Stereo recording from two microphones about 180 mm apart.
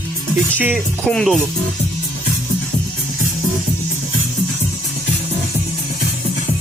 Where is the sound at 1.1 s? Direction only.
Centre (ahead or behind).